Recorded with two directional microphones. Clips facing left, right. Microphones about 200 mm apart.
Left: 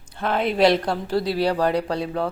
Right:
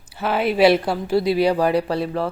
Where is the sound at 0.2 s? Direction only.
5° right (ahead or behind).